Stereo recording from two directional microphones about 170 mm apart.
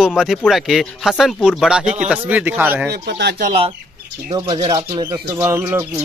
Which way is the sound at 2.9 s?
80° right.